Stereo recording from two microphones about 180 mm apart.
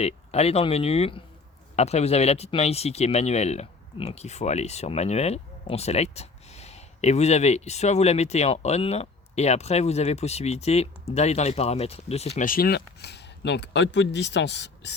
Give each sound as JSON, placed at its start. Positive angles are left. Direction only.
{"t": 0.0, "sound": "speech", "side_deg": 35}
{"t": 12.5, "sound": "speech", "side_deg": 55}